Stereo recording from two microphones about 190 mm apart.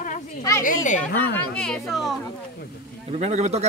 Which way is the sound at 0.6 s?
40° left (ahead or behind).